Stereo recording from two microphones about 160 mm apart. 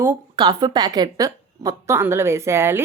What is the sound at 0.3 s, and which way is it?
A woman's voice, 25° right (ahead or behind).